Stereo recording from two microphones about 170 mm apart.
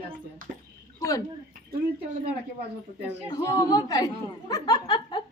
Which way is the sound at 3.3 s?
20° left (ahead or behind).